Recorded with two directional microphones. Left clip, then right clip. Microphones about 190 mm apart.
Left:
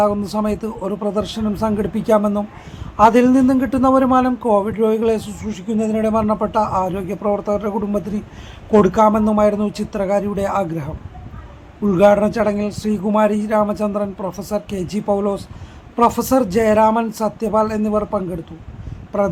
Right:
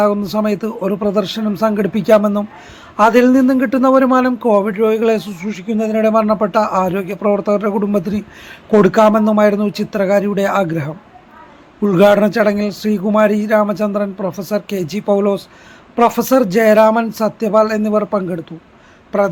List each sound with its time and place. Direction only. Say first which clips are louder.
0.0 s a man's voice: right 3 dB; 10° right (ahead or behind)